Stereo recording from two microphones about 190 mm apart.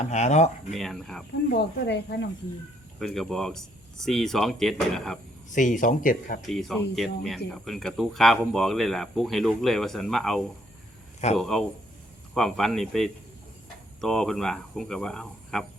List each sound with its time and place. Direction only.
0.0 s speech: 35° left (ahead or behind)
0.7 s speech: centre (ahead or behind)
1.5 s speech: 60° left (ahead or behind)
3.0 s speech: centre (ahead or behind)
5.5 s speech: 40° left (ahead or behind)
6.5 s speech: centre (ahead or behind)